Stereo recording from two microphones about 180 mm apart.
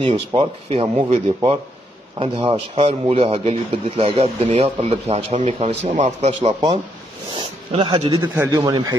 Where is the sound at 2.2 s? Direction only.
30° right (ahead or behind).